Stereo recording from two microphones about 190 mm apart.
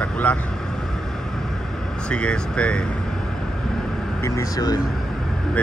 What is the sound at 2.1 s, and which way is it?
Speech, 5° left (ahead or behind).